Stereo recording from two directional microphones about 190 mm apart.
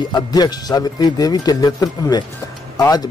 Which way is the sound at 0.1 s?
20° left (ahead or behind).